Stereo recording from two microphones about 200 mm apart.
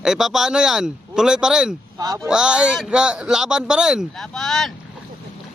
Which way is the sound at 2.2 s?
5° right (ahead or behind).